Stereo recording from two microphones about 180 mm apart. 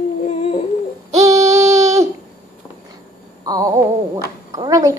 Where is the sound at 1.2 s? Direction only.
15° right (ahead or behind).